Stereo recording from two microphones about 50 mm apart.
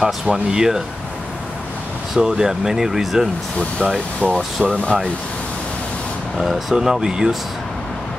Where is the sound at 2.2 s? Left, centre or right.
Centre.